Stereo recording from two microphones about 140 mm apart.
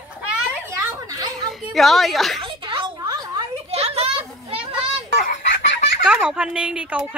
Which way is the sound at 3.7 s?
45° right (ahead or behind).